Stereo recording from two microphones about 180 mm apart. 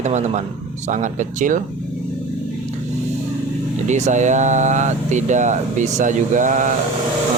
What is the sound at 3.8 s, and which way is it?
Speech, 40° right (ahead or behind).